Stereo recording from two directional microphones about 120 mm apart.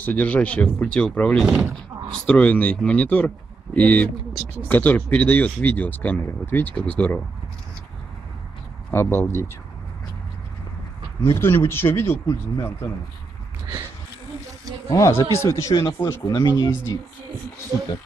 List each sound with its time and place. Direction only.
0.0 s speech: 10° left (ahead or behind)
8.9 s speech: 20° left (ahead or behind)
11.2 s speech: 25° left (ahead or behind)
14.9 s speech: 25° left (ahead or behind)